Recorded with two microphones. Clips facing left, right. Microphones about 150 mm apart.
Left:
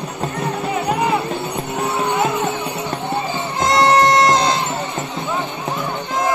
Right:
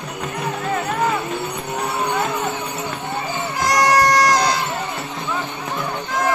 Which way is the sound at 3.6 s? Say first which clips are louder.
Left 3 dB; 25° left (ahead or behind).